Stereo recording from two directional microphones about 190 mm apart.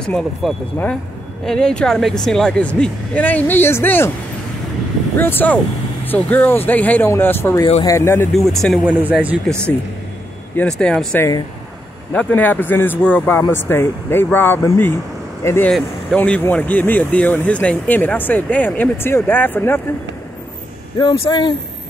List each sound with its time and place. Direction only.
0.0 s speech: centre (ahead or behind)
5.1 s speech: 10° left (ahead or behind)
8.3 s speech: centre (ahead or behind)
10.8 s speech: 5° left (ahead or behind)
21.0 s speech: 25° left (ahead or behind)